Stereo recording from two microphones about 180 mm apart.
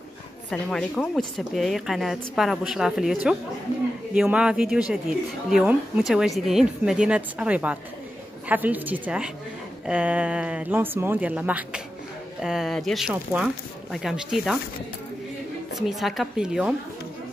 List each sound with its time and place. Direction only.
0.5 s a woman's voice: 5° left (ahead or behind)
15.9 s a woman's voice: centre (ahead or behind)